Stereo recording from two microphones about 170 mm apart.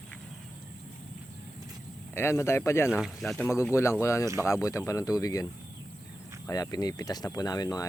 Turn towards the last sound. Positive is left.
turn(degrees=20)  # may be behind; listen again after turning